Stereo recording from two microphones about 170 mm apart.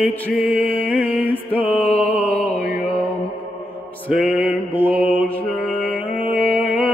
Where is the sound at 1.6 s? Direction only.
30° left (ahead or behind).